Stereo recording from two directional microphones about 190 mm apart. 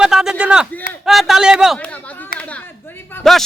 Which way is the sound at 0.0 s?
5° right (ahead or behind).